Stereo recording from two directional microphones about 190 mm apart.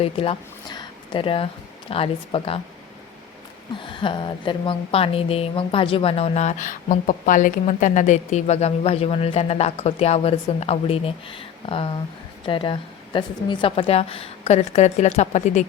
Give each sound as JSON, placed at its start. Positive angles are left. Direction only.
{"t": 0.0, "sound": "a woman's voice", "side_deg": 30}
{"t": 3.8, "sound": "a woman's voice", "side_deg": 25}